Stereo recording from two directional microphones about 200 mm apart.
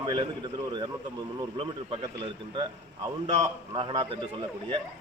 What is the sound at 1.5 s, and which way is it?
A man's voice, 25° right (ahead or behind).